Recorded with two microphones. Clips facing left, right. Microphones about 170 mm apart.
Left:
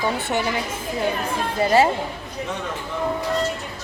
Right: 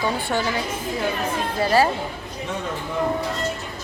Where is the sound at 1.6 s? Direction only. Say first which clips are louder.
Left 2 dB; 25° left (ahead or behind).